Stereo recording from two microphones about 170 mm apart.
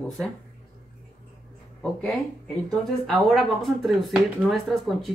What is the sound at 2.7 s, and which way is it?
Speech, centre (ahead or behind).